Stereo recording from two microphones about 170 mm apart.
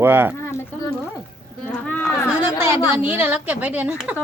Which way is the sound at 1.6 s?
10° left (ahead or behind).